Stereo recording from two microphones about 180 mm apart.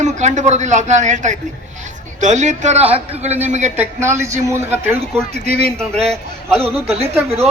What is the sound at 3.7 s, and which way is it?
A man's voice, 10° right (ahead or behind).